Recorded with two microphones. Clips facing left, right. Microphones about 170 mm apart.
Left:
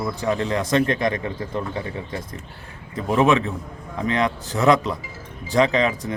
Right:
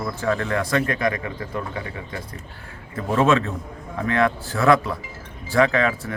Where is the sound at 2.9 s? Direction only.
15° left (ahead or behind).